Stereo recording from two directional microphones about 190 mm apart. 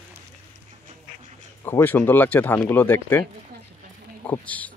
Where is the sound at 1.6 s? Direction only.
10° left (ahead or behind).